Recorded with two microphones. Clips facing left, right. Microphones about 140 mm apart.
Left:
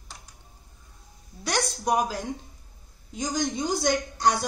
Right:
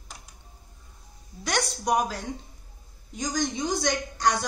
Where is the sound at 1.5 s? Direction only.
5° left (ahead or behind).